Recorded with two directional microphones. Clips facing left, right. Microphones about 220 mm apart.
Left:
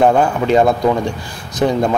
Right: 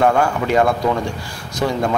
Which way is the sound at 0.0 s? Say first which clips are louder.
Left 3 dB; 20° left (ahead or behind).